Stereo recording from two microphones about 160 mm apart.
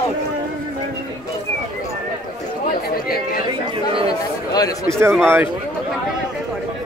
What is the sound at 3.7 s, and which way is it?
Speech, 35° right (ahead or behind).